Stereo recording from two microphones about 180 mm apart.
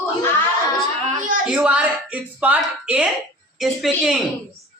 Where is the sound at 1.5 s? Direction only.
5° right (ahead or behind).